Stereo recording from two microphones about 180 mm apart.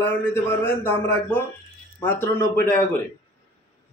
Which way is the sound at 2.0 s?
10° left (ahead or behind).